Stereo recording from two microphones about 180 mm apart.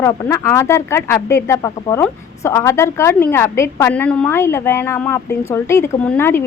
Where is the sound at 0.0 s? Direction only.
15° left (ahead or behind).